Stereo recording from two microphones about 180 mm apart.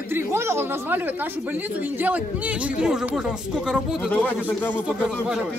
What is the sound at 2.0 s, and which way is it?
Speech, 10° right (ahead or behind).